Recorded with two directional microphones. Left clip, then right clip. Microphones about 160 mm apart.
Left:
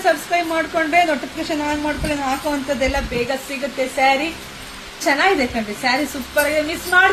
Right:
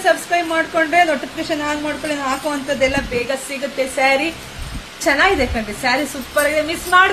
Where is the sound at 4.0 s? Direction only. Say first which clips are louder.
Right 1 dB; 25° right (ahead or behind).